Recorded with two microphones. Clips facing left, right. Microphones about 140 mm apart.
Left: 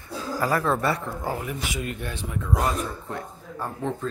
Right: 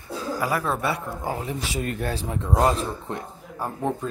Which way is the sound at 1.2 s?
20° right (ahead or behind).